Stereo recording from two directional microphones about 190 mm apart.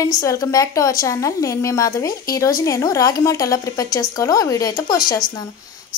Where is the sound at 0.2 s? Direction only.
15° left (ahead or behind).